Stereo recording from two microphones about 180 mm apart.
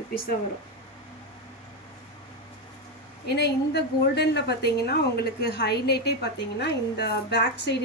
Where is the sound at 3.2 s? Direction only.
65° left (ahead or behind).